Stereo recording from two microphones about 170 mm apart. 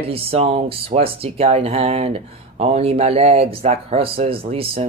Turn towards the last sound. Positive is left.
turn(degrees=-35)  # may be behind; listen again after turning